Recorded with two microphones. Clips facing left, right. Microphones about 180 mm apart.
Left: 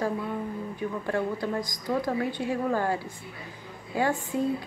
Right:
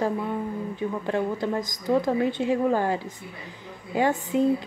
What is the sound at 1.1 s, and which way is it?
A woman's voice, 20° right (ahead or behind).